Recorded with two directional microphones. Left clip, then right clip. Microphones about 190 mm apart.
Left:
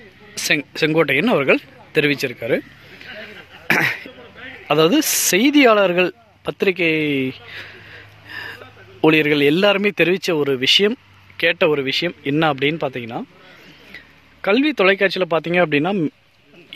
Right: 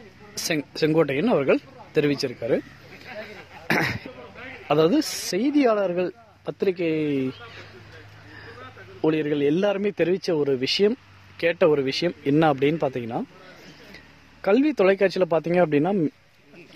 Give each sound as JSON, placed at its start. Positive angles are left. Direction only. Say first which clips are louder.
{"t": 0.3, "sound": "a man's voice", "louder": "left 8 dB", "side_deg": 0}
{"t": 3.6, "sound": "cough", "louder": "left 6 dB", "side_deg": 0}
{"t": 4.6, "sound": "a man's voice", "louder": "left 5 dB", "side_deg": 0}
{"t": 9.0, "sound": "a man's voice", "louder": "left 8 dB", "side_deg": 10}